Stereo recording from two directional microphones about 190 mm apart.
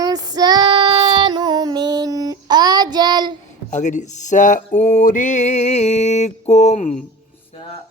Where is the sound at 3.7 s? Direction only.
40° left (ahead or behind).